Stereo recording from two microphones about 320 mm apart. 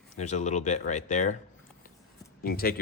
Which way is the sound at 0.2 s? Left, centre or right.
Left.